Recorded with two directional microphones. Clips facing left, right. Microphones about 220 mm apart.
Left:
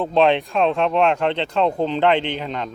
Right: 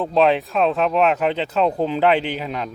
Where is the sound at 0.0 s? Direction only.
Centre (ahead or behind).